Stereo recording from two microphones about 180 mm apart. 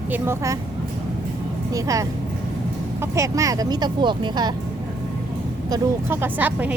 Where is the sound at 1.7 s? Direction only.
20° right (ahead or behind).